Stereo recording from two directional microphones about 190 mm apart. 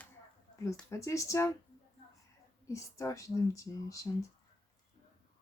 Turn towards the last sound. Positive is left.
turn(degrees=15)  # may be behind; listen again after turning